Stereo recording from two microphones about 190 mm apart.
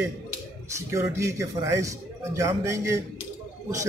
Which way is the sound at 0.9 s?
15° right (ahead or behind).